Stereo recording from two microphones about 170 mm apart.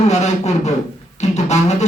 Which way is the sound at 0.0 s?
40° left (ahead or behind).